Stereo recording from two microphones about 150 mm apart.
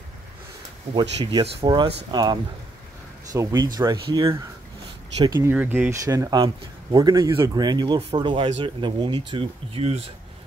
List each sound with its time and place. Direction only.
1.2 s speech: 35° right (ahead or behind)
5.5 s speech: 10° right (ahead or behind)
6.0 s speech: 25° right (ahead or behind); by 10.0 s 40° right (ahead or behind)